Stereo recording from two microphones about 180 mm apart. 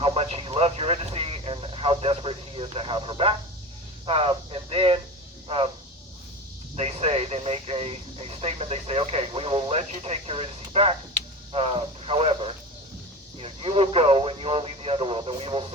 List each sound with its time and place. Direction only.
0.0 s radio: 35° right (ahead or behind)
4.0 s speech: 30° right (ahead or behind)
6.7 s speech: 35° right (ahead or behind)
11.5 s radio: 30° right (ahead or behind)
13.4 s speech: 35° right (ahead or behind)